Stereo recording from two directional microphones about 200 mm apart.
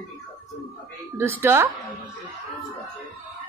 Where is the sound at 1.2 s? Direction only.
10° right (ahead or behind).